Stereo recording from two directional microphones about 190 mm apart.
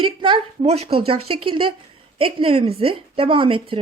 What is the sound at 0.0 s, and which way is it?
A woman's voice, 25° right (ahead or behind).